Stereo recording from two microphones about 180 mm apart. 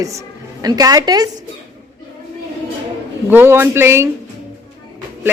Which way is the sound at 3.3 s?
10° right (ahead or behind).